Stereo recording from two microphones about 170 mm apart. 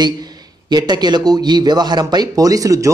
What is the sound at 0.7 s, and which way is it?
A man's voice, 25° right (ahead or behind).